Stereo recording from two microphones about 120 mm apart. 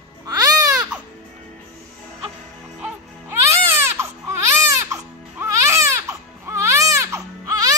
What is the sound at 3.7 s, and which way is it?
Baby cry, 25° right (ahead or behind).